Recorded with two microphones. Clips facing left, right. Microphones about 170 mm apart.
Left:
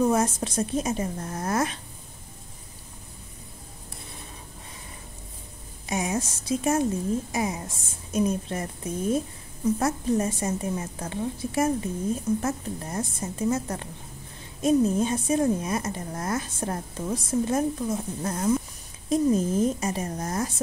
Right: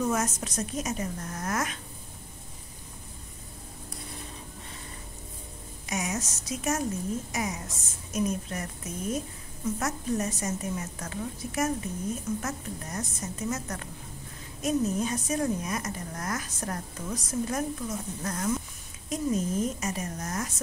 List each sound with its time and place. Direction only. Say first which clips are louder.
0.0 s a woman's voice: left 6 dB; 30° left (ahead or behind)
5.9 s a woman's voice: left 5 dB; 30° left (ahead or behind)